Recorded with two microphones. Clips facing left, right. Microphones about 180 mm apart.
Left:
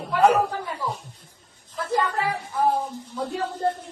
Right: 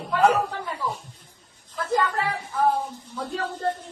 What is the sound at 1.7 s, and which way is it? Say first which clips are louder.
A woman's voice: even; 10° left (ahead or behind).